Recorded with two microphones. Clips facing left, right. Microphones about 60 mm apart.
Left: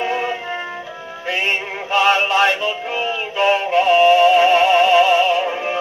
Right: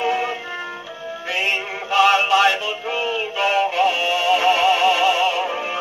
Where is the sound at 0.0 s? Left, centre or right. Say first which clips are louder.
Even; left.